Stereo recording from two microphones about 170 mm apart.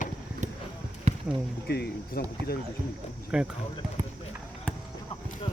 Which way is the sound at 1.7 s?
65° left (ahead or behind).